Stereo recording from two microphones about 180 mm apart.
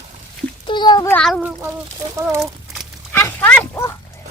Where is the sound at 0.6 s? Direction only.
25° left (ahead or behind).